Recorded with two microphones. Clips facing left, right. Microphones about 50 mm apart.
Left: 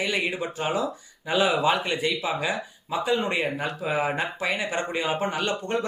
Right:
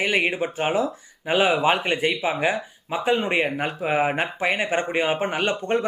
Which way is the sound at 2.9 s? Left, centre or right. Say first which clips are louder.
Right 3 dB; right.